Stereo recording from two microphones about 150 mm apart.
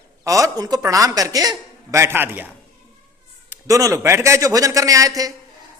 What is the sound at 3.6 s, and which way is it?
A man's voice, 20° right (ahead or behind).